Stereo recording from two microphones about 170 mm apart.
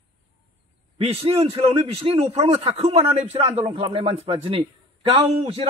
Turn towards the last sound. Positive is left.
turn(degrees=-35)  # may be behind; listen again after turning